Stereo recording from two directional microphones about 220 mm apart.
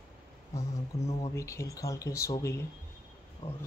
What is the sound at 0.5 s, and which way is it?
Speech, 15° left (ahead or behind).